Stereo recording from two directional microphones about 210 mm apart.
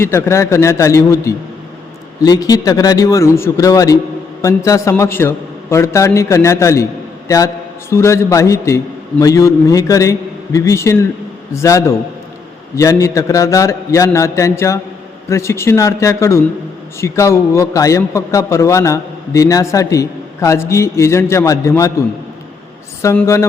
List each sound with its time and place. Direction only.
0.0 s a man's voice: 15° left (ahead or behind)